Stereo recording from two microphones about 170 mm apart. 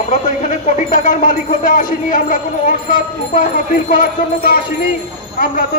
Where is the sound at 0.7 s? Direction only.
45° left (ahead or behind).